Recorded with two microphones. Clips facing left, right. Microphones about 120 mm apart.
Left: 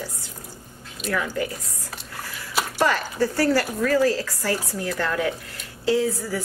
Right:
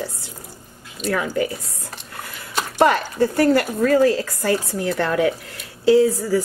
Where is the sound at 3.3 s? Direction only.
20° right (ahead or behind).